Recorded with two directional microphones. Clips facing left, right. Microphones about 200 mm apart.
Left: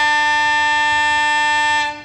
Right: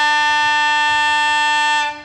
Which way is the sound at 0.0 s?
15° left (ahead or behind).